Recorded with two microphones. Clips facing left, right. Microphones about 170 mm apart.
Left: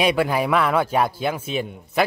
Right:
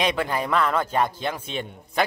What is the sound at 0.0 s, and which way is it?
A man's voice, 10° left (ahead or behind).